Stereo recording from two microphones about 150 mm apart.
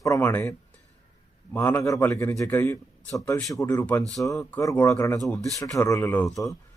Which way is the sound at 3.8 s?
10° left (ahead or behind).